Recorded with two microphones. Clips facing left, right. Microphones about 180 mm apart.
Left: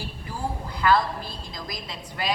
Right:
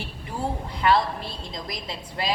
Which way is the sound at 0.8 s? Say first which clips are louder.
Even; 25° right (ahead or behind).